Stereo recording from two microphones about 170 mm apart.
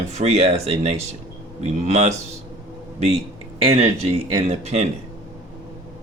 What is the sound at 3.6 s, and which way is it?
Speech, 35° right (ahead or behind).